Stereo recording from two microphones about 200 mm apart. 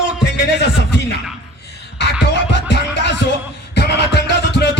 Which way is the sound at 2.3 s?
60° left (ahead or behind).